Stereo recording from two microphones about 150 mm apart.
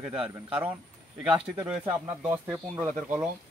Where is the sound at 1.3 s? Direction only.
10° right (ahead or behind).